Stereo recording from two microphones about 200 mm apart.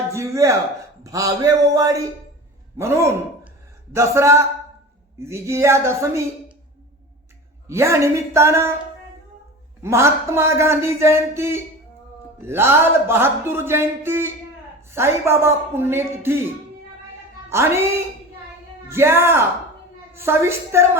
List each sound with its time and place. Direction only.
0.1 s a sound: 15° right (ahead or behind)
1.0 s music: 15° right (ahead or behind)
2.7 s a man's voice: 15° right (ahead or behind)
3.9 s music: 15° right (ahead or behind)
7.7 s music: 15° right (ahead or behind)
9.8 s music: 15° right (ahead or behind)
17.5 s music: 15° right (ahead or behind)